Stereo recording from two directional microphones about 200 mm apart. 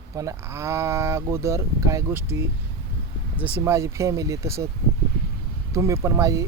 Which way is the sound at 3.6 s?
15° right (ahead or behind).